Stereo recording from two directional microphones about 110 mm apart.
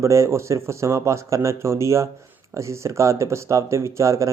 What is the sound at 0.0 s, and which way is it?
Speech, 25° right (ahead or behind).